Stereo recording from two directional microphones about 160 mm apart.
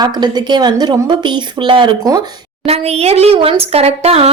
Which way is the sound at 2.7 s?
40° right (ahead or behind).